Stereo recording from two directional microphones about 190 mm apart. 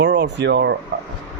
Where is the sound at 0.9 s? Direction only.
75° right (ahead or behind).